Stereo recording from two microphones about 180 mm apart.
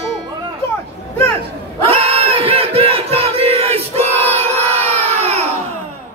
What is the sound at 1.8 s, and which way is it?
Battle cry, 30° right (ahead or behind).